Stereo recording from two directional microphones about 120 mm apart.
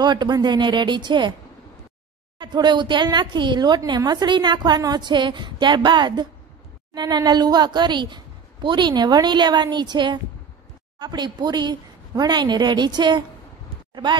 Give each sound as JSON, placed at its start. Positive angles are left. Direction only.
{"t": 0.0, "sound": "a woman's voice", "side_deg": -35}
{"t": 2.3, "sound": "a woman's voice", "side_deg": -40}